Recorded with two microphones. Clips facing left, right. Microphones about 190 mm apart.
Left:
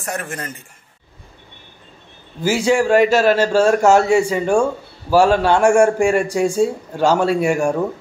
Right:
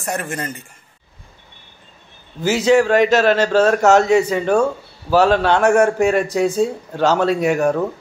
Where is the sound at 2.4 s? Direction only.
10° left (ahead or behind).